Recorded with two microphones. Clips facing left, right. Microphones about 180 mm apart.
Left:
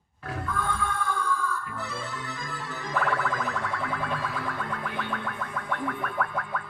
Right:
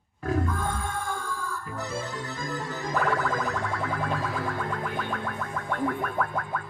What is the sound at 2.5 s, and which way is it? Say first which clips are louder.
Music: right 3 dB; 45° right (ahead or behind).